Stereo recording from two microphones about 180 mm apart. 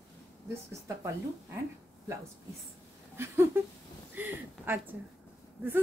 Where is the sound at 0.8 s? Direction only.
15° right (ahead or behind).